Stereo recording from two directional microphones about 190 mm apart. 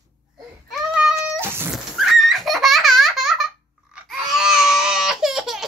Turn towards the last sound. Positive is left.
turn(degrees=0)  # may be behind; listen again after turning